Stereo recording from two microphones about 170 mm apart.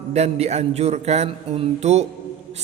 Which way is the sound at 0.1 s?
40° right (ahead or behind).